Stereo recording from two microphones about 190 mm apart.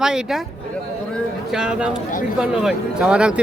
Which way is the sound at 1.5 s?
5° right (ahead or behind).